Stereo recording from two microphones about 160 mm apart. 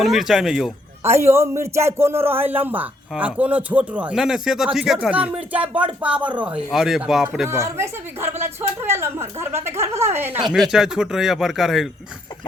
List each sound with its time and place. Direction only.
0.0 s speech: centre (ahead or behind)
1.0 s speech: 15° right (ahead or behind)
7.4 s speech: 15° right (ahead or behind)
10.5 s speech: 5° right (ahead or behind)